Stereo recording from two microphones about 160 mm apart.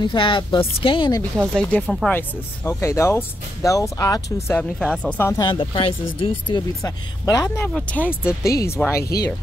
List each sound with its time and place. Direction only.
0.0 s speech: 30° left (ahead or behind)
1.5 s speech: 5° left (ahead or behind)
2.1 s speech: 15° left (ahead or behind)
4.6 s speech: 5° left (ahead or behind)
5.3 s speech: 20° left (ahead or behind)
5.6 s speech: 35° left (ahead or behind)
6.8 s speech: 20° left (ahead or behind)